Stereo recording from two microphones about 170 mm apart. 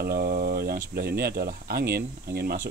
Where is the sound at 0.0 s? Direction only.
65° right (ahead or behind).